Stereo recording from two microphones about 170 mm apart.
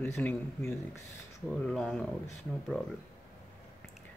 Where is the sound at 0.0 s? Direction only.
10° left (ahead or behind).